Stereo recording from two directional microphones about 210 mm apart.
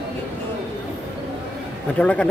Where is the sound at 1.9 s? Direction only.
5° left (ahead or behind).